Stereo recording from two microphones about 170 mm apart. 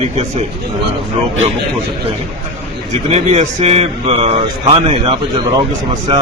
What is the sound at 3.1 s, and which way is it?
A man's voice, 40° right (ahead or behind).